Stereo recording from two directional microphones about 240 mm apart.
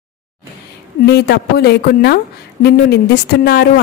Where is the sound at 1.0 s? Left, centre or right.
Left.